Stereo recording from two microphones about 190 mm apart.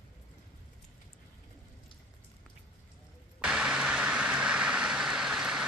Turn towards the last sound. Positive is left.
turn(degrees=-5)  # may be behind; listen again after turning